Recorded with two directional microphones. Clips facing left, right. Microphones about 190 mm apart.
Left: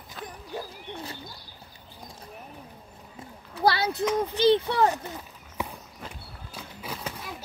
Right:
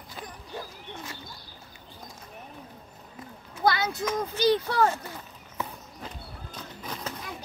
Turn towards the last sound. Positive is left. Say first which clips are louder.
# even
turn(degrees=5)  # may be behind; listen again after turning